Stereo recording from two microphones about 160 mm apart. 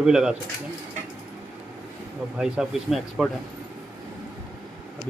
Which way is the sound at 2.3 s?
5° right (ahead or behind).